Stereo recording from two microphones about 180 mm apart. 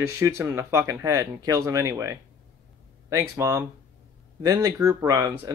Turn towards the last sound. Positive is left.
turn(degrees=-20)  # may be behind; listen again after turning